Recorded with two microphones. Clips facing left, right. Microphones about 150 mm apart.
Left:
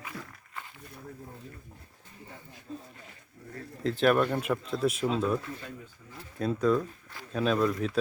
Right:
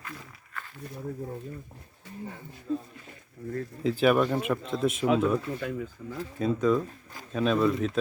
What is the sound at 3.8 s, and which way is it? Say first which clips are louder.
Speech: right 1 dB; 5° right (ahead or behind).